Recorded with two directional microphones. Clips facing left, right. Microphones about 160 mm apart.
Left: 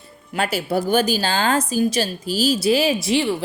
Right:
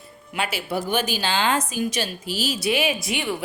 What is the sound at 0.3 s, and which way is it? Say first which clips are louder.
A woman's voice: left 5 dB; 40° left (ahead or behind).